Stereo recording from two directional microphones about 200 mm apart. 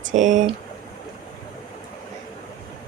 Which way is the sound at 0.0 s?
40° right (ahead or behind).